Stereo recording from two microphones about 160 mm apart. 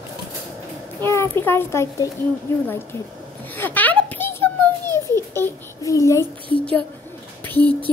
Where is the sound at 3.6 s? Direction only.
10° left (ahead or behind).